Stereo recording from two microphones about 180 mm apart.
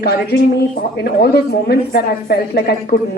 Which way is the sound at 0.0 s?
60° left (ahead or behind).